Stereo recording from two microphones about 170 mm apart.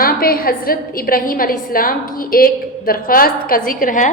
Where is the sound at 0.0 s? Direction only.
60° left (ahead or behind).